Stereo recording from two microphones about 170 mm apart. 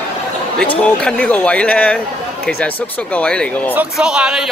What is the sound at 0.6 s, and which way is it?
Speech, 5° left (ahead or behind).